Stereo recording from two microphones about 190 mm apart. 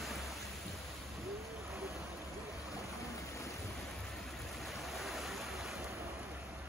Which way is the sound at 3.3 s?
15° left (ahead or behind).